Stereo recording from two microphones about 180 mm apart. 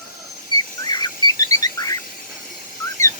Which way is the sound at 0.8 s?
25° left (ahead or behind).